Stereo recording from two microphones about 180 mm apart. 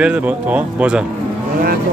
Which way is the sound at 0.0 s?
5° right (ahead or behind).